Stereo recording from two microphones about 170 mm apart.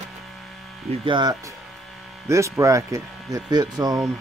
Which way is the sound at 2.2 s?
15° right (ahead or behind).